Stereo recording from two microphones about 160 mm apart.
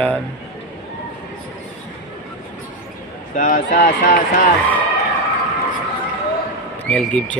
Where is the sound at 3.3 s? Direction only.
55° left (ahead or behind).